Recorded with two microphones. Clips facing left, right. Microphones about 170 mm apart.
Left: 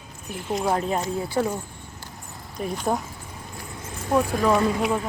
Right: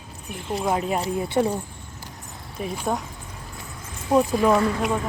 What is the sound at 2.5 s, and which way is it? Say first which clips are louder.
Speech: left 1 dB; 5° right (ahead or behind).